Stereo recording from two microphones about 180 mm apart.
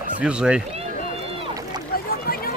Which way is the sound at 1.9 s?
55° left (ahead or behind).